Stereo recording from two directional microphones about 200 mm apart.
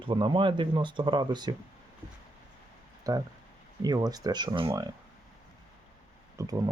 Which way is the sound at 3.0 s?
20° right (ahead or behind).